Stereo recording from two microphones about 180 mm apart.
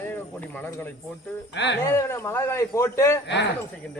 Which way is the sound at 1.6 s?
75° left (ahead or behind).